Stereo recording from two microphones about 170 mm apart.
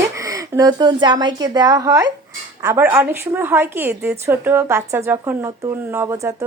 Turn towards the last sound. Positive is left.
turn(degrees=-15)  # may be behind; listen again after turning